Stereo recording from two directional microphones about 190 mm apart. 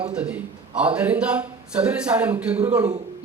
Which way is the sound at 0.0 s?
5° right (ahead or behind).